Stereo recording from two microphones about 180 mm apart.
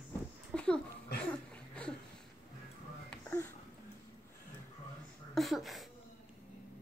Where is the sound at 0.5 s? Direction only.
5° left (ahead or behind).